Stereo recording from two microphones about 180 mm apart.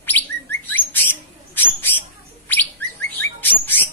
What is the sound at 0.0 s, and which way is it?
Bird, 10° left (ahead or behind).